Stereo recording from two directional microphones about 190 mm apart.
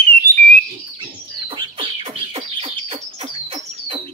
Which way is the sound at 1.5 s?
25° right (ahead or behind).